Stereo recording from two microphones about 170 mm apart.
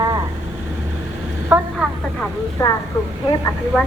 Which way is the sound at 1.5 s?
10° right (ahead or behind).